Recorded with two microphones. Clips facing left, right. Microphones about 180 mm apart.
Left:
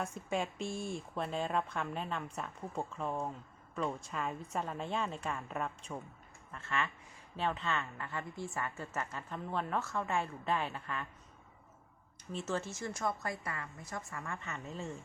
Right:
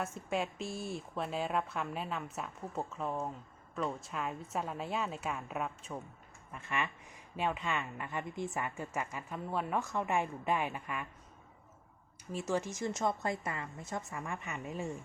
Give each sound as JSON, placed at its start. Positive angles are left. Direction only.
{"t": 0.0, "sound": "a woman's voice", "side_deg": 0}
{"t": 6.5, "sound": "a woman's voice", "side_deg": -15}
{"t": 12.3, "sound": "a woman's voice", "side_deg": -10}